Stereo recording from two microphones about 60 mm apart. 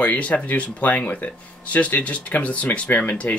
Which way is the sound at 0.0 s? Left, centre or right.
Left.